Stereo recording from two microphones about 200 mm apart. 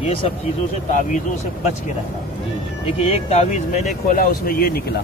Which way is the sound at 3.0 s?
30° left (ahead or behind).